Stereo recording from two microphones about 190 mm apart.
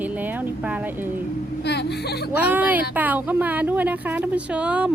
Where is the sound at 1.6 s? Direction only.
60° left (ahead or behind).